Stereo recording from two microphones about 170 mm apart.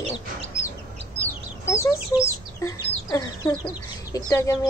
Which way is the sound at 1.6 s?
15° left (ahead or behind).